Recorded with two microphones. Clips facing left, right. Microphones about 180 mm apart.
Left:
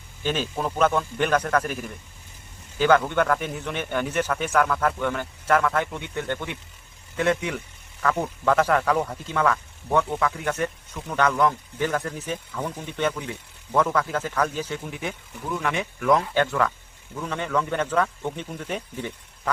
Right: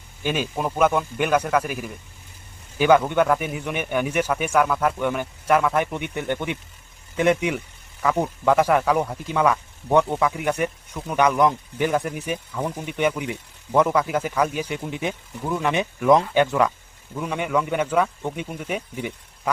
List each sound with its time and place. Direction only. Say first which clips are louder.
0.2 s speech: right 2 dB; 10° right (ahead or behind)